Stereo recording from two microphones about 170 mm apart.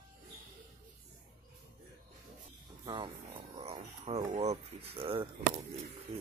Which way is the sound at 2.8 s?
30° right (ahead or behind).